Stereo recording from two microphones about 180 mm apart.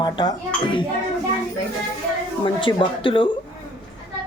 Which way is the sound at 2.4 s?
25° left (ahead or behind).